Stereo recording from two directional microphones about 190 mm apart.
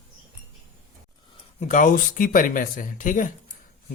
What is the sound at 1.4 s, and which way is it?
Speech, 35° left (ahead or behind).